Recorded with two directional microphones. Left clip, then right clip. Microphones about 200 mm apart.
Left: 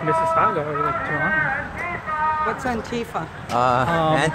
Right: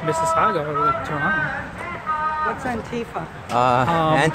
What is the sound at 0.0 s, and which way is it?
Speech, 15° right (ahead or behind).